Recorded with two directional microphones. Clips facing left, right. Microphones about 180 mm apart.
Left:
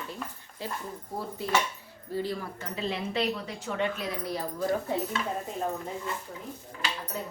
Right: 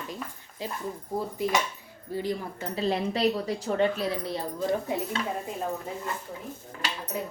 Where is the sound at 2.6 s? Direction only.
35° right (ahead or behind).